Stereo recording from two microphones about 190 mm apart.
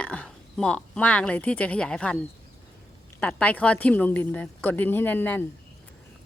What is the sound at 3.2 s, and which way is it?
Speech, 10° left (ahead or behind).